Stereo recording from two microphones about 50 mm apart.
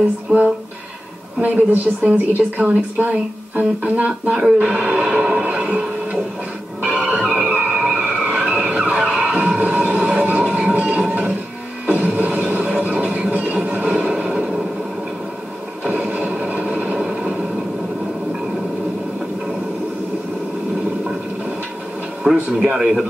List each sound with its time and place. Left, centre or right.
1.4 s a woman's voice: right
4.6 s music: right
6.8 s music: right
7.6 s vehicle: right
8.4 s skidding: right
9.6 s a sound: right
15.8 s a sound: right
22.2 s a man's voice: centre